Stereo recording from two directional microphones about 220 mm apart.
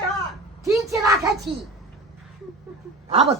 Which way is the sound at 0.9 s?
15° right (ahead or behind).